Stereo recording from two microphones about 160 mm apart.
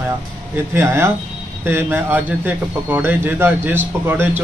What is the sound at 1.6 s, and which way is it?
A man's voice, 10° right (ahead or behind).